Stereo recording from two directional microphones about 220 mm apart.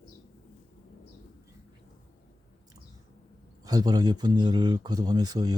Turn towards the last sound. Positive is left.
turn(degrees=-20)  # may be behind; listen again after turning